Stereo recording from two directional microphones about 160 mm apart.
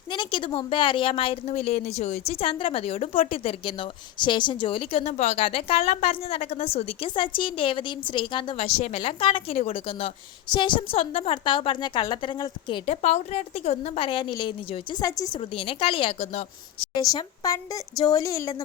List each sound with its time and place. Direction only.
0.1 s a woman's voice: 30° left (ahead or behind)
15.4 s a woman's voice: 35° left (ahead or behind)
16.8 s a woman's voice: 25° left (ahead or behind)